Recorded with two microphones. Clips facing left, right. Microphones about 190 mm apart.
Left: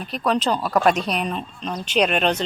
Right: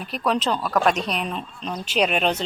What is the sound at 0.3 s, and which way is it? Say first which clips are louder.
A woman's voice: left 2 dB; centre (ahead or behind).